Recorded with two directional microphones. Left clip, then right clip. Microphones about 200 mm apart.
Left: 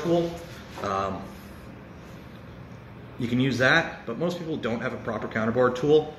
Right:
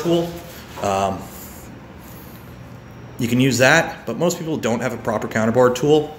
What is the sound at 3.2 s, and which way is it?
A man's voice, 30° right (ahead or behind).